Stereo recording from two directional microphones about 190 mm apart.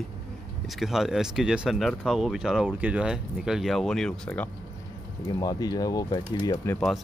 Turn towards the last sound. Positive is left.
turn(degrees=10)  # may be behind; listen again after turning